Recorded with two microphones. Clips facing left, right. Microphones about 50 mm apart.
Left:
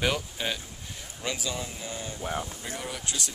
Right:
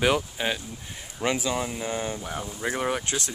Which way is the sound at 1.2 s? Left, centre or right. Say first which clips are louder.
Right 7 dB; right.